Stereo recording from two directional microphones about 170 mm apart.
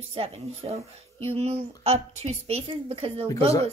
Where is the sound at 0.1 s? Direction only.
35° right (ahead or behind).